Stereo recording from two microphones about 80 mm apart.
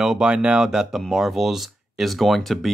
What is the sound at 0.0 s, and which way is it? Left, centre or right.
Speech, centre.